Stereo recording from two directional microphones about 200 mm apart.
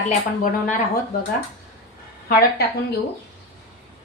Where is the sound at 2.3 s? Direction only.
50° left (ahead or behind).